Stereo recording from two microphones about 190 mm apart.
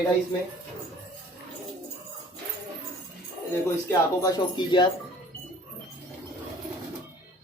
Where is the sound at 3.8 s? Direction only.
20° left (ahead or behind).